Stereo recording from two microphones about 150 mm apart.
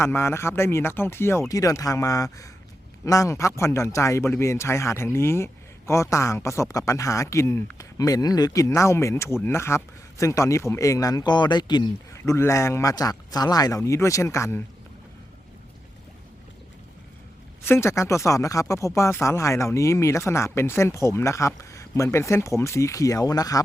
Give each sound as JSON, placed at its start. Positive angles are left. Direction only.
{"t": 0.0, "sound": "speech", "side_deg": 15}
{"t": 12.2, "sound": "speech", "side_deg": 20}
{"t": 17.6, "sound": "speech", "side_deg": 15}